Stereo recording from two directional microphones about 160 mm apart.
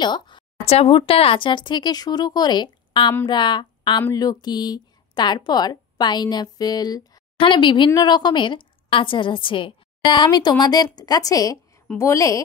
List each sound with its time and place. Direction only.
0.0 s speech: 30° left (ahead or behind)